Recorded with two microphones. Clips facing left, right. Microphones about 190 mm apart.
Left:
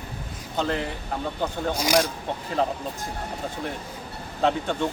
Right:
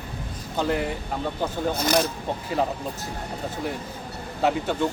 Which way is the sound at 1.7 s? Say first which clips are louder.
Left 1 dB; 10° left (ahead or behind).